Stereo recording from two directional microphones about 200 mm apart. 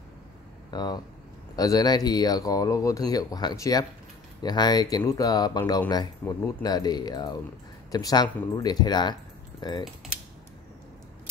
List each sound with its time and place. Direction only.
0.7 s speech: 20° left (ahead or behind)